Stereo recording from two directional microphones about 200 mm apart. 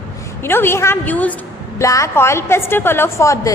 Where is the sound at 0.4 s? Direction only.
10° left (ahead or behind).